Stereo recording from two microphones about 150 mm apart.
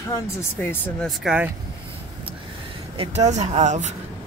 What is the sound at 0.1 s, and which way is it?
Speech, 15° left (ahead or behind).